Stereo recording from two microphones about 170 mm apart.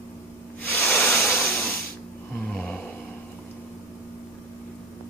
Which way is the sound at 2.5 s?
5° left (ahead or behind).